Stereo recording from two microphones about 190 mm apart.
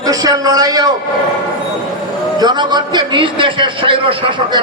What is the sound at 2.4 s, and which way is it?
A man's voice, 25° right (ahead or behind).